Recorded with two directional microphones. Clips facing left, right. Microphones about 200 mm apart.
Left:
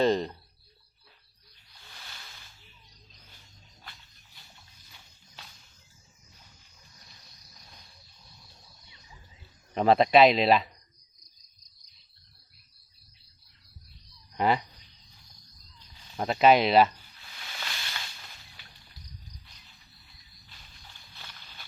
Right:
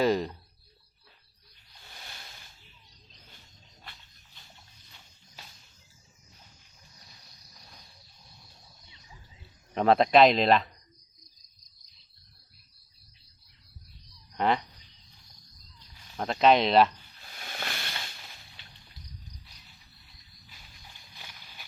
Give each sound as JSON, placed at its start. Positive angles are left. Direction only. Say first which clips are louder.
{"t": 0.0, "sound": "speech", "louder": "left 1 dB", "side_deg": -5}
{"t": 9.7, "sound": "speech", "louder": "even", "side_deg": 0}
{"t": 14.3, "sound": "speech", "louder": "left 1 dB", "side_deg": 5}
{"t": 16.1, "sound": "speech", "louder": "left 1 dB", "side_deg": 5}
{"t": 17.4, "sound": "hiss", "louder": "right 4 dB", "side_deg": -50}
{"t": 20.5, "sound": "walk", "louder": "right 1 dB", "side_deg": -10}